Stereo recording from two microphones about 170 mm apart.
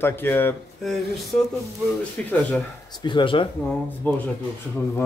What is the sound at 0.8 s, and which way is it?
A man's voice, centre (ahead or behind).